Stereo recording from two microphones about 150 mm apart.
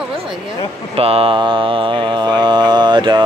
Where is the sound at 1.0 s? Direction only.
40° right (ahead or behind).